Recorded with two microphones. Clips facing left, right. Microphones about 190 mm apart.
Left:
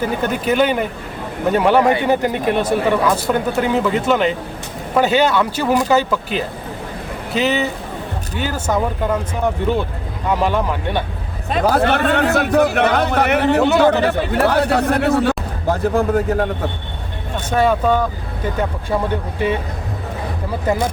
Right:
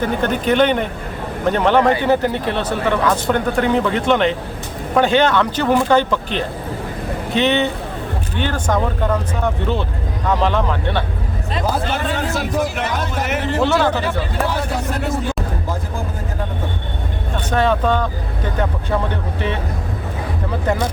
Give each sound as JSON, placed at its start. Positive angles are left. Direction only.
{"t": 0.0, "sound": "speech", "side_deg": 5}
{"t": 11.4, "sound": "a man's voice", "side_deg": 60}
{"t": 13.6, "sound": "speech", "side_deg": 15}
{"t": 13.9, "sound": "speech", "side_deg": 65}
{"t": 17.5, "sound": "speech", "side_deg": 10}